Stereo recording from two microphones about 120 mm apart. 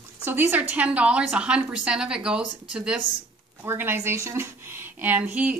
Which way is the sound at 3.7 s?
20° right (ahead or behind).